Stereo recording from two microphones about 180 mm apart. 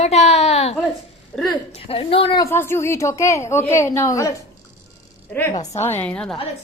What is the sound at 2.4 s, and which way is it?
A woman's voice, 15° left (ahead or behind).